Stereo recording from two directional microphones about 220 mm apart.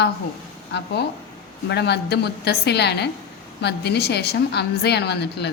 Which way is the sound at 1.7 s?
50° left (ahead or behind).